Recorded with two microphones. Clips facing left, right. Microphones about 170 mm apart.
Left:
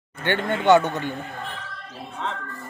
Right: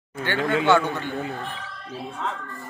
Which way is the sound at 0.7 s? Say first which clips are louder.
Left 6 dB; 15° left (ahead or behind).